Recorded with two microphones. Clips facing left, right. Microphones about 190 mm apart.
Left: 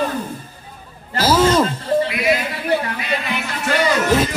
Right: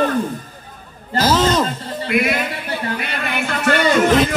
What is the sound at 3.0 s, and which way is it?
Music, 55° right (ahead or behind).